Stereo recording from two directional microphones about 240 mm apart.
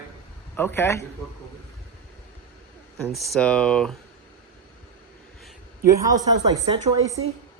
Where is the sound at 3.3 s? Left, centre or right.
Centre.